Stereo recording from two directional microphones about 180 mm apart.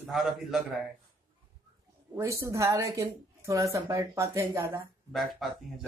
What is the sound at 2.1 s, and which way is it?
A woman's voice, 15° right (ahead or behind).